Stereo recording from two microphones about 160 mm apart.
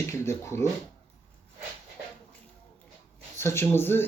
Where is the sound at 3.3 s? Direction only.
15° left (ahead or behind).